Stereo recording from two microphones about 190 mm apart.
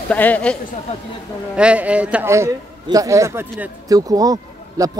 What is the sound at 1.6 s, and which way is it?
A man's voice, 5° right (ahead or behind).